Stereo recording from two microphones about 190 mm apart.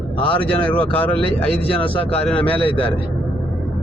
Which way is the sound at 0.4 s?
5° left (ahead or behind).